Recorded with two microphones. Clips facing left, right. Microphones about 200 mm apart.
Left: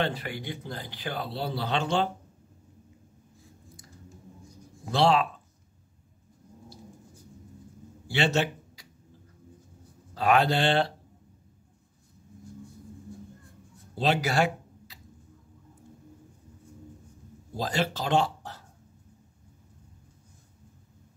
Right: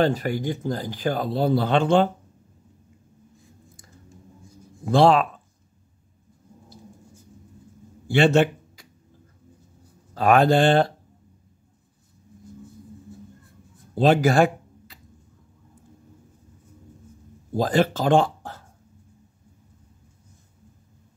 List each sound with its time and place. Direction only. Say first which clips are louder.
0.0 s speech: right 9 dB; 45° right (ahead or behind)
4.8 s speech: right 6 dB; 50° right (ahead or behind)
8.1 s a man's voice: right 9 dB; 55° right (ahead or behind)
10.1 s speech: right 6 dB; 50° right (ahead or behind)
13.9 s speech: right 8 dB; 50° right (ahead or behind)
17.6 s speech: right 8 dB; 50° right (ahead or behind)